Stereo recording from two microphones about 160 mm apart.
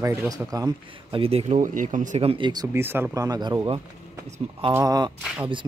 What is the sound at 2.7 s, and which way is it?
Speech, 15° right (ahead or behind).